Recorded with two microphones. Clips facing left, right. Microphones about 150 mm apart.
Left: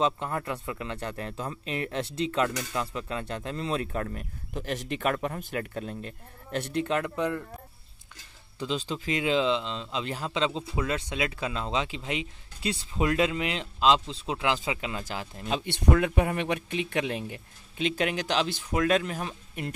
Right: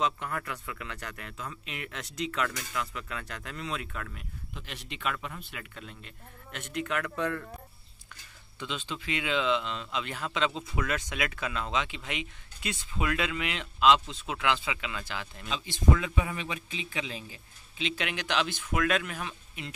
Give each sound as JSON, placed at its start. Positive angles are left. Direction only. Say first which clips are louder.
{"t": 0.0, "sound": "speech", "louder": "left 4 dB", "side_deg": 25}
{"t": 7.2, "sound": "speech", "louder": "left 3 dB", "side_deg": 20}
{"t": 8.5, "sound": "speech", "louder": "left 6 dB", "side_deg": 35}
{"t": 15.5, "sound": "speech", "louder": "left 3 dB", "side_deg": 60}